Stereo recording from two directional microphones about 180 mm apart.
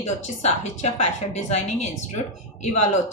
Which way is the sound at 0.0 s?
40° left (ahead or behind).